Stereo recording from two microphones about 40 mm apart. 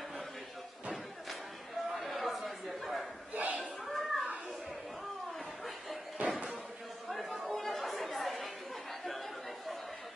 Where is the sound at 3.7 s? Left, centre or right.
Centre.